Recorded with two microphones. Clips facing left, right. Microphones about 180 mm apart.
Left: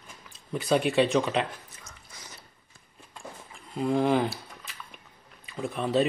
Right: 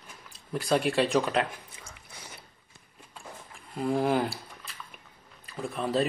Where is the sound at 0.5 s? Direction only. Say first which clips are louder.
Left 2 dB; centre (ahead or behind).